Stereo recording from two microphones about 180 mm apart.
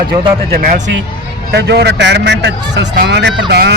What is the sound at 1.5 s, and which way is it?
A man's voice, 70° right (ahead or behind).